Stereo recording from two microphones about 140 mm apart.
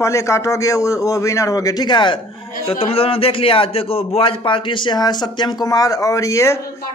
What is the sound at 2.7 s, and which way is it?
A man's voice, 45° left (ahead or behind).